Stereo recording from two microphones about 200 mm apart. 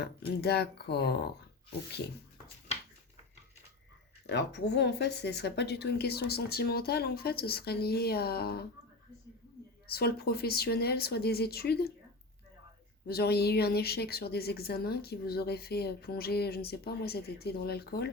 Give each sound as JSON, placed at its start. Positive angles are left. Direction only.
{"t": 0.0, "sound": "speech", "side_deg": 55}
{"t": 4.3, "sound": "speech", "side_deg": 55}
{"t": 9.9, "sound": "speech", "side_deg": 50}
{"t": 13.1, "sound": "speech", "side_deg": 50}